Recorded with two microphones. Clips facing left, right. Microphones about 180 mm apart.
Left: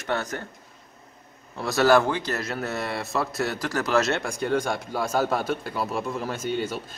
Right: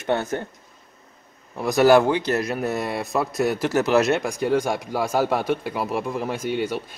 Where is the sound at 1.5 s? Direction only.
15° right (ahead or behind).